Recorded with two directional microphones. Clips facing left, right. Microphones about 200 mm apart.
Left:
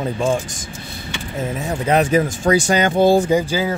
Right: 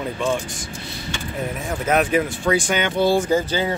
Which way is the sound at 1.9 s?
35° left (ahead or behind).